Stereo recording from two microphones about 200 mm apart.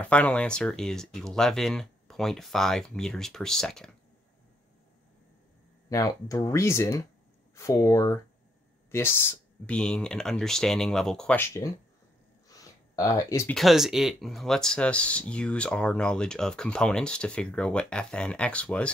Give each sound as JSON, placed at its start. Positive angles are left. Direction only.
{"t": 0.0, "sound": "speech", "side_deg": 5}
{"t": 5.9, "sound": "speech", "side_deg": 15}
{"t": 12.4, "sound": "a sound", "side_deg": 15}
{"t": 13.6, "sound": "speech", "side_deg": 0}